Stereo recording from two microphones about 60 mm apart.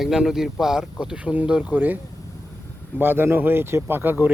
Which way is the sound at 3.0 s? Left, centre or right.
Right.